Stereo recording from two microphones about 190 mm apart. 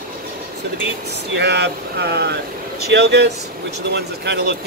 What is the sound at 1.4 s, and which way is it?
Speech, 60° right (ahead or behind).